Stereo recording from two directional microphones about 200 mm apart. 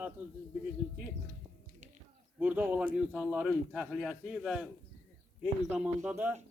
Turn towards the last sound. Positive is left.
turn(degrees=-5)  # may be behind; listen again after turning